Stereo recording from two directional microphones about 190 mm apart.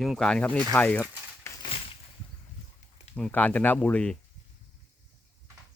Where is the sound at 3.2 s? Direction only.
5° left (ahead or behind).